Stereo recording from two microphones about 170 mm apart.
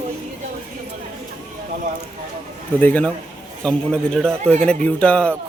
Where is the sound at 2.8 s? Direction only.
10° left (ahead or behind).